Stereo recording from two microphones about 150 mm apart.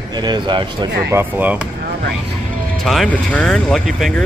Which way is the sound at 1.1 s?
10° right (ahead or behind).